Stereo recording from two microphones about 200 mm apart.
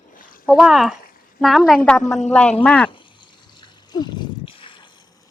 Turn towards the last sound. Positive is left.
turn(degrees=25)  # may be behind; listen again after turning